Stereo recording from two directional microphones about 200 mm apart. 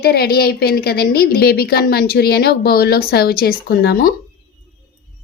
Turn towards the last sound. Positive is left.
turn(degrees=50)  # may be behind; listen again after turning